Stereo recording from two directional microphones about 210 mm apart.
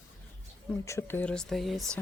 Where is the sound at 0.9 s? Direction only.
10° left (ahead or behind).